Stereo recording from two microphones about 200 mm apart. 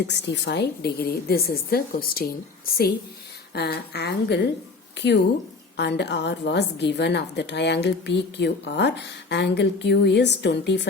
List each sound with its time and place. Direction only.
0.1 s a woman's voice: 55° left (ahead or behind)
3.5 s a woman's voice: 55° left (ahead or behind)